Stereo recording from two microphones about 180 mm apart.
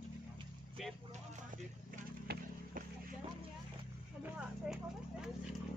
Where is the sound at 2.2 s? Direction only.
60° right (ahead or behind).